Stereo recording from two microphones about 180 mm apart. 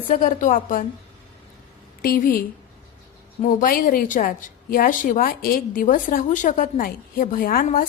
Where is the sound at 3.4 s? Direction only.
50° left (ahead or behind).